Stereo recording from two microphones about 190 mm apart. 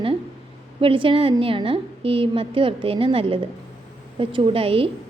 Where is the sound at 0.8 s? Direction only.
30° right (ahead or behind).